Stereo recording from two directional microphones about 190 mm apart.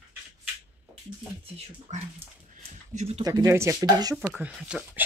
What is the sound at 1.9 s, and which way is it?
Speech, 40° right (ahead or behind).